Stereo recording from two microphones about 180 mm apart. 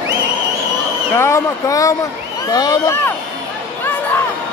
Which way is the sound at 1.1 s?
15° left (ahead or behind).